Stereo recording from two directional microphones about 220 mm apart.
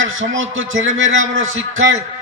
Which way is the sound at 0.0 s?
60° right (ahead or behind).